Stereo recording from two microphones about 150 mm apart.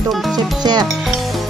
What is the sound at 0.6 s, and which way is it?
Music, 30° right (ahead or behind).